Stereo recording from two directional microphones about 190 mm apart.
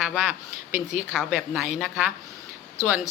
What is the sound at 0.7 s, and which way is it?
Speech, 40° left (ahead or behind).